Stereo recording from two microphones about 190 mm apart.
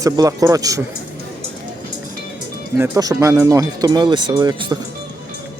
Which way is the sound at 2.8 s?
15° right (ahead or behind).